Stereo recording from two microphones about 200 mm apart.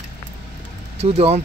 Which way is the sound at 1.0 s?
30° right (ahead or behind).